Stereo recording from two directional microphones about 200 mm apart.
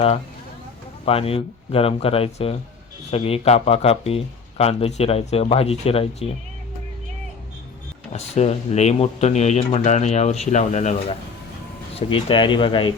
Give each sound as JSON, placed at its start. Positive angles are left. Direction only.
{"t": 1.0, "sound": "speech", "side_deg": 30}
{"t": 8.1, "sound": "speech", "side_deg": 35}
{"t": 11.9, "sound": "speech", "side_deg": 25}